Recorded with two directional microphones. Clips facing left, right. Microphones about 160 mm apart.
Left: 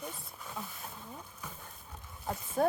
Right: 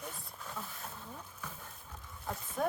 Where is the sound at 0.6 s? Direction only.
15° left (ahead or behind).